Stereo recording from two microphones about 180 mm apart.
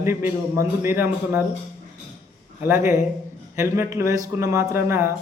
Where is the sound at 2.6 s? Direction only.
15° right (ahead or behind).